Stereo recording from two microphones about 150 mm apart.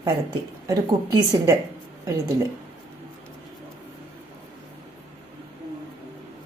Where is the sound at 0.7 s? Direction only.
25° right (ahead or behind).